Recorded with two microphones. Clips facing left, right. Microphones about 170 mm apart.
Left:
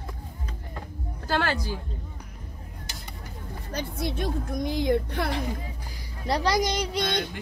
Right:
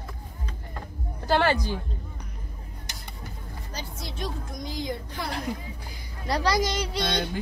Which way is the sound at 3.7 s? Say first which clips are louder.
Left 9 dB; 60° left (ahead or behind).